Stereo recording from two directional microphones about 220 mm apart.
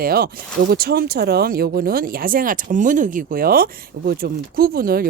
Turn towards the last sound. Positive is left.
turn(degrees=-40)  # may be behind; listen again after turning